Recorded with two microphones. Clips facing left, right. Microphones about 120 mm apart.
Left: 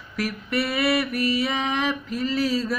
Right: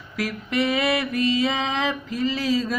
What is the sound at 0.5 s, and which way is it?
Speech, 20° right (ahead or behind).